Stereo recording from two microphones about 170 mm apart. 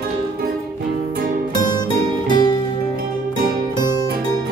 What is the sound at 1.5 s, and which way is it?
Music, 25° left (ahead or behind).